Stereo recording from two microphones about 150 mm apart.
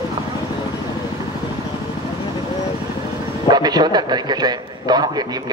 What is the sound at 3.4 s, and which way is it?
A man's voice, 25° right (ahead or behind).